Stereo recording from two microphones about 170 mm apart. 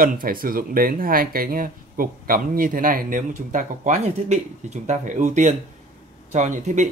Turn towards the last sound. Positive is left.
turn(degrees=-45)  # may be behind; listen again after turning